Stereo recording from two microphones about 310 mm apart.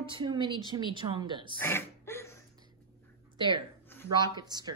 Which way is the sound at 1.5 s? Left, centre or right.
Centre.